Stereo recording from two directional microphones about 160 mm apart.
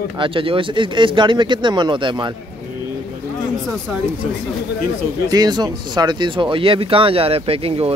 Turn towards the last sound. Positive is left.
turn(degrees=-35)  # may be behind; listen again after turning